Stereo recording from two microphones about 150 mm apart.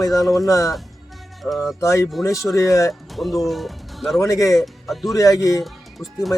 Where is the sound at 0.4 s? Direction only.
20° left (ahead or behind).